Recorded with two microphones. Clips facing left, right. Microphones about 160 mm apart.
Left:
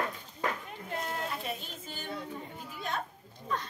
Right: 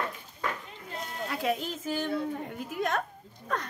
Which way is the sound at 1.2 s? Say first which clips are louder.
Right 7 dB; 90° right.